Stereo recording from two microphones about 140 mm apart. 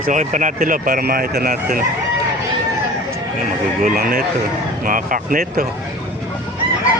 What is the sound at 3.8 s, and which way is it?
Speech, 80° right.